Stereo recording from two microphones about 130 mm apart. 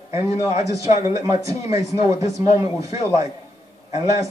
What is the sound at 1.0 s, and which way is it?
A man's voice, 25° right (ahead or behind).